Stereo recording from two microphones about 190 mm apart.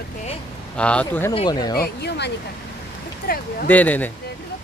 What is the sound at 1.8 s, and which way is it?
Speech, 60° left (ahead or behind).